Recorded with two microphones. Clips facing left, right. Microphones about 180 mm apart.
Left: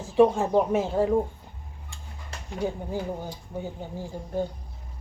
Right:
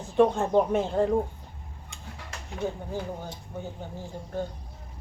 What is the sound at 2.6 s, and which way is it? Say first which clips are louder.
Speech: left 2 dB; 10° left (ahead or behind).